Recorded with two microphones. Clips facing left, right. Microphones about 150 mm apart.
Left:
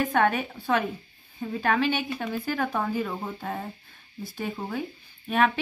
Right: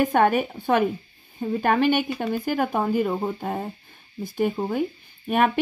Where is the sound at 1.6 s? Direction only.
50° right (ahead or behind).